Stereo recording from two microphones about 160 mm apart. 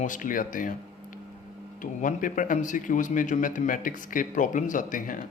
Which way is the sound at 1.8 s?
55° left (ahead or behind).